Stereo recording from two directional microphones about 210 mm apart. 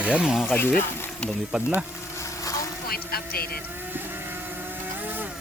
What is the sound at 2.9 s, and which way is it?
Vehicle, 45° left (ahead or behind).